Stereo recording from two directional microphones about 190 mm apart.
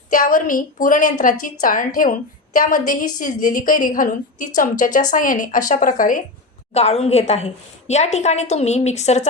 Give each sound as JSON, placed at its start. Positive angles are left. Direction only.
{"t": 0.1, "sound": "a woman's voice", "side_deg": 45}
{"t": 6.7, "sound": "a woman's voice", "side_deg": 35}